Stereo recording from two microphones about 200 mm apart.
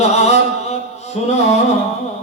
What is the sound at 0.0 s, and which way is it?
Chant, 35° left (ahead or behind).